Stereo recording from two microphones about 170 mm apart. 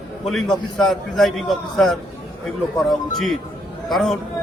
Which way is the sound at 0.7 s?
Centre (ahead or behind).